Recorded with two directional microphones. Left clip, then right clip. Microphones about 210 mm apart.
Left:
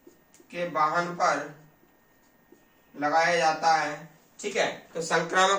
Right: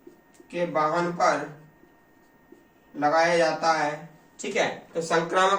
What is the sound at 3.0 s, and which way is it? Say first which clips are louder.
Speech: right 2 dB; 5° left (ahead or behind).